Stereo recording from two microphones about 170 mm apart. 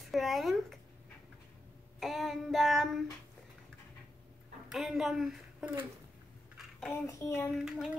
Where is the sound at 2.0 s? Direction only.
Centre (ahead or behind).